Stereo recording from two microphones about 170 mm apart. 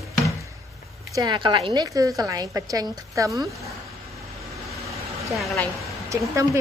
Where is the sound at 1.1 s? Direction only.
25° right (ahead or behind).